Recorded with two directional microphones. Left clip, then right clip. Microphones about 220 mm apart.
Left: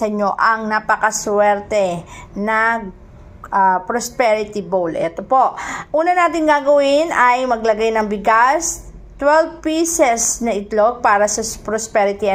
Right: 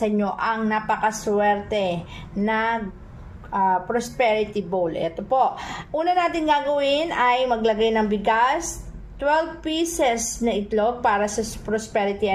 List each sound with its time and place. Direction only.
0.0 s a woman's voice: 20° left (ahead or behind)